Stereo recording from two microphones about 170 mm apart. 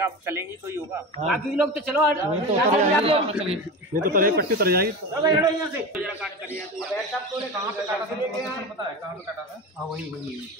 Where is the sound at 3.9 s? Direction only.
55° right (ahead or behind).